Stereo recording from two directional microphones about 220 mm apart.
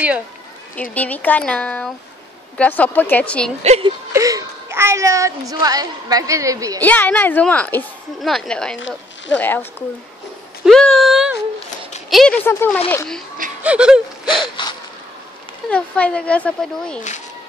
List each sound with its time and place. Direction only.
0.9 s a woman's voice: 5° left (ahead or behind)
3.6 s speech: 30° right (ahead or behind)
4.1 s speech: 15° right (ahead or behind)
6.8 s a woman's voice: 5° left (ahead or behind)
13.6 s speech: 5° right (ahead or behind)
14.3 s a sound: 20° left (ahead or behind)
15.7 s speech: 5° left (ahead or behind)